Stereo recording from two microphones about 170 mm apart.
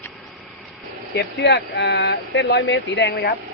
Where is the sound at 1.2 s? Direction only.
85° left.